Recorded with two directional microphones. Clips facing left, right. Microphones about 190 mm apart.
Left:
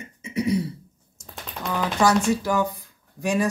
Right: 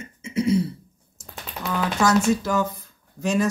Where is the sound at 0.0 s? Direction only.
15° left (ahead or behind).